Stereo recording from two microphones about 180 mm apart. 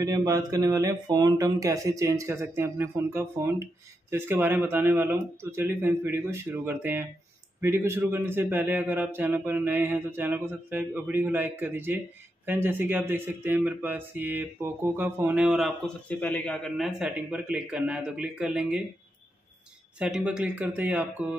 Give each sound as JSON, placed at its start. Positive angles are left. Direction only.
{"t": 0.0, "sound": "speech", "side_deg": -20}
{"t": 20.0, "sound": "speech", "side_deg": -5}